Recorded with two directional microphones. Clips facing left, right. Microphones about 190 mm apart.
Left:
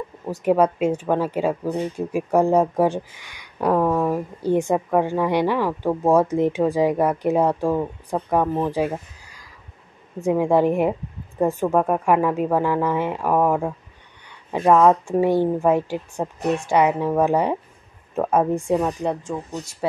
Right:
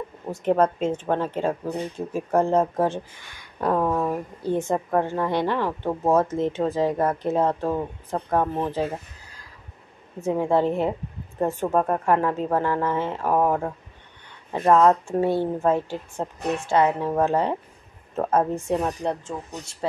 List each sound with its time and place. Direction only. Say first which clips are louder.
0.4 s a woman's voice: left 3 dB; 10° left (ahead or behind)